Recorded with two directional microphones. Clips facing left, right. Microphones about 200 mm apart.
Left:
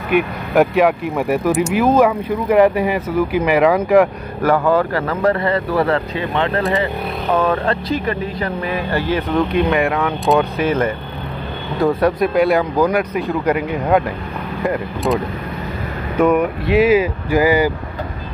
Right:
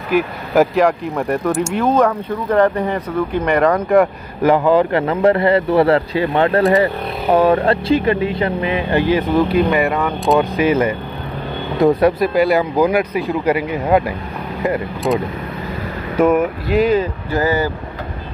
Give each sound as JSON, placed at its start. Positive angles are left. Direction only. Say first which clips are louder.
{"t": 0.1, "sound": "speech", "louder": "even", "side_deg": 0}
{"t": 4.4, "sound": "speech", "louder": "right 2 dB", "side_deg": -15}
{"t": 9.1, "sound": "speech", "louder": "right 1 dB", "side_deg": -5}
{"t": 12.2, "sound": "speech", "louder": "even", "side_deg": 0}
{"t": 16.2, "sound": "speech", "louder": "even", "side_deg": -5}